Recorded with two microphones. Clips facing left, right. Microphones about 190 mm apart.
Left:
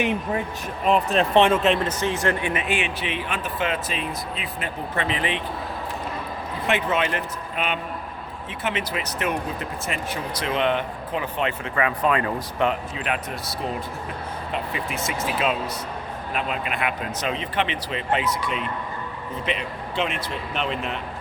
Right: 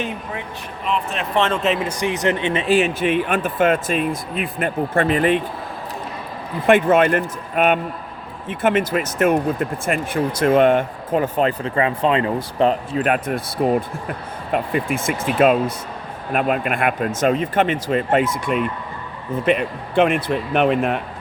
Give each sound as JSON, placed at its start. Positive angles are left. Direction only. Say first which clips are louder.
{"t": 0.9, "sound": "speech", "louder": "left 4 dB", "side_deg": 40}
{"t": 1.3, "sound": "speech", "louder": "left 1 dB", "side_deg": 15}
{"t": 1.5, "sound": "speech", "louder": "even", "side_deg": 0}
{"t": 6.7, "sound": "speech", "louder": "right 10 dB", "side_deg": -50}
{"t": 13.0, "sound": "speech", "louder": "right 8 dB", "side_deg": -50}